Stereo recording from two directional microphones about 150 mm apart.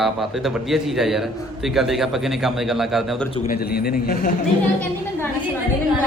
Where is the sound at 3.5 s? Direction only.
90° left.